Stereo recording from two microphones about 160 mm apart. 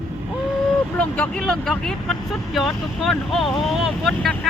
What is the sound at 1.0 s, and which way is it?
Speech, 5° left (ahead or behind).